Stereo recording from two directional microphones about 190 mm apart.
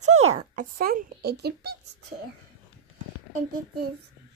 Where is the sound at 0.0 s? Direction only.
35° right (ahead or behind); by 1.8 s 55° right (ahead or behind).